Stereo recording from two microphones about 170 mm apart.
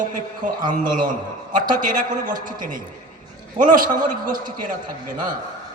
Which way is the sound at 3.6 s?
50° right (ahead or behind).